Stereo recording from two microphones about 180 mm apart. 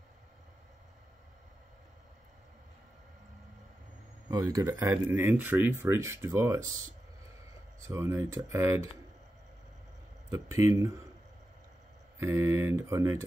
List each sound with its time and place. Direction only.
4.3 s speech: 20° right (ahead or behind)
10.3 s speech: 15° right (ahead or behind)
12.2 s speech: 15° right (ahead or behind)